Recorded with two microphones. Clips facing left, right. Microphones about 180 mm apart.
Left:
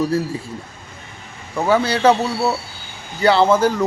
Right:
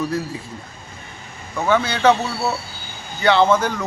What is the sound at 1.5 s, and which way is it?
Speech, 35° left (ahead or behind).